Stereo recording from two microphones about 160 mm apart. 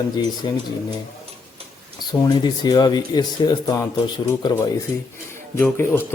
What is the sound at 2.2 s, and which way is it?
Speech, 25° left (ahead or behind).